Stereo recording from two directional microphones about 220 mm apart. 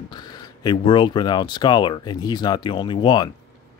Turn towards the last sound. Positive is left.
turn(degrees=20)  # may be behind; listen again after turning